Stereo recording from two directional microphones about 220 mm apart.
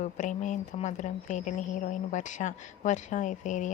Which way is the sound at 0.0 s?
35° left (ahead or behind).